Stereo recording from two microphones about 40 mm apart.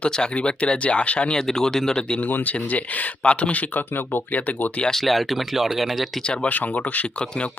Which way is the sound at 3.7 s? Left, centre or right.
Left.